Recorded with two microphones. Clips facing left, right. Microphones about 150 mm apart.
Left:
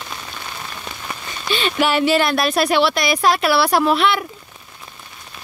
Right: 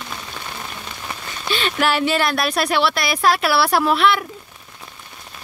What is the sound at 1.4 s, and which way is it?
Speech, centre (ahead or behind).